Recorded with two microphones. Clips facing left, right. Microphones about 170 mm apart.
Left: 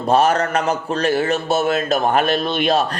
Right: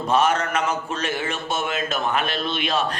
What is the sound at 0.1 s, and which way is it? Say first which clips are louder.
A man's voice: left 5 dB; 35° left (ahead or behind).